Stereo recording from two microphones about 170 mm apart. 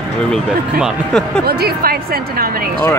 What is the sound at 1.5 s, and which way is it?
A woman's voice, 65° right (ahead or behind).